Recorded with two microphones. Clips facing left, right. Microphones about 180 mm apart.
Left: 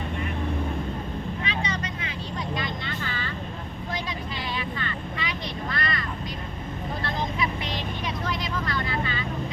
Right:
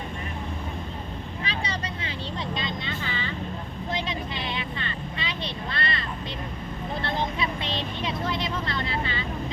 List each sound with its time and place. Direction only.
1.5 s vehicle: 30° right (ahead or behind)
2.6 s vehicle: 20° right (ahead or behind)